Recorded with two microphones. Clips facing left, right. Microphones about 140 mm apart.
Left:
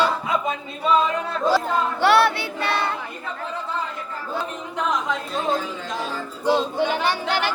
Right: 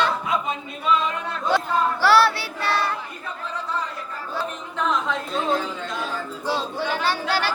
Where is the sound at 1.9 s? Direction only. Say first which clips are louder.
Left 1 dB; 20° left (ahead or behind).